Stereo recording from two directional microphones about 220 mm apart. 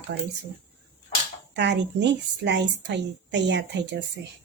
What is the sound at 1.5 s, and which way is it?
Speech, 50° right (ahead or behind).